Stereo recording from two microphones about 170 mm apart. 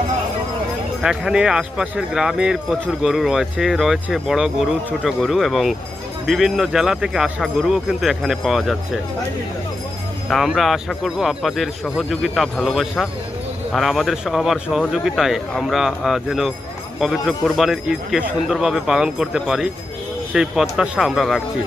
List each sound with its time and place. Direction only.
1.0 s speech: 5° right (ahead or behind)
10.3 s speech: centre (ahead or behind)